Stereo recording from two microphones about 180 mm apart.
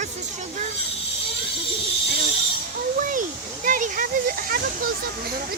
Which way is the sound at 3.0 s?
45° right (ahead or behind).